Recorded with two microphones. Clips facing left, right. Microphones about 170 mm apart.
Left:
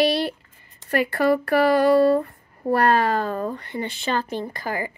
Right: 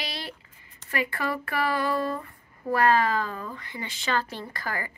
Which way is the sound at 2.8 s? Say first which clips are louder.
Left 3 dB; 70° left (ahead or behind).